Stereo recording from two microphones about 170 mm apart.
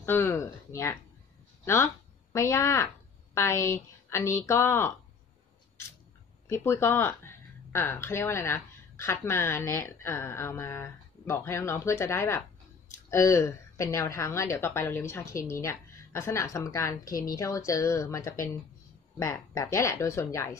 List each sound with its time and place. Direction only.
0.0 s a woman's voice: 15° left (ahead or behind)
6.4 s a woman's voice: 15° left (ahead or behind)